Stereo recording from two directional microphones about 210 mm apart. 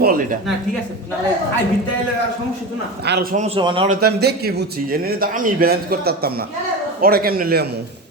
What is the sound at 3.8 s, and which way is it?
A man's voice, 50° right (ahead or behind).